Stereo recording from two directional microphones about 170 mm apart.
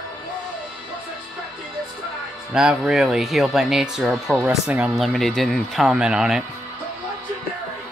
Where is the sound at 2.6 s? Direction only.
5° right (ahead or behind).